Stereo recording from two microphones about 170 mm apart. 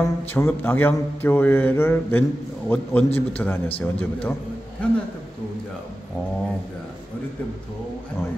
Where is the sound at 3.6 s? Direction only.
35° left (ahead or behind).